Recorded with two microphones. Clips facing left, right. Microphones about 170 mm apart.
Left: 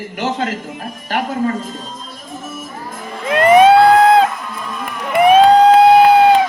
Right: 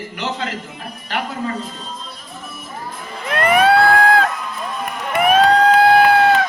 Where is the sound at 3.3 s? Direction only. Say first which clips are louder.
Left 6 dB; 20° left (ahead or behind).